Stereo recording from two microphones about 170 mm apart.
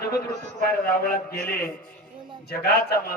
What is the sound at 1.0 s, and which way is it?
A man's voice, 65° left (ahead or behind).